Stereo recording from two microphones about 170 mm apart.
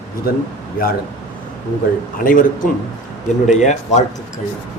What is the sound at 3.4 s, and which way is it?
Speech, 45° left (ahead or behind).